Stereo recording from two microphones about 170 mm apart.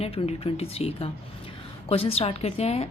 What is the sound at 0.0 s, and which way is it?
A woman's voice, 35° left (ahead or behind).